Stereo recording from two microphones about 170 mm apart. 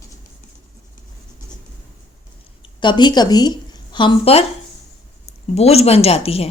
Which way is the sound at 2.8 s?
25° left (ahead or behind).